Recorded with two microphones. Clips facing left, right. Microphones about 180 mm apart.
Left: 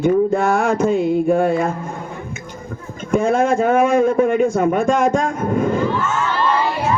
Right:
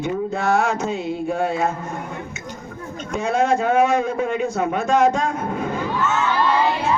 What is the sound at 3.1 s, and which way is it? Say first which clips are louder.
Speech: left 4 dB; 50° left (ahead or behind).